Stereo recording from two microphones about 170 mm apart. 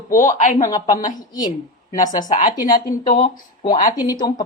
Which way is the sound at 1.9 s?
50° left (ahead or behind).